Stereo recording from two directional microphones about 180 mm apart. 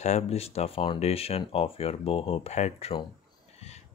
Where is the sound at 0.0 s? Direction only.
35° left (ahead or behind).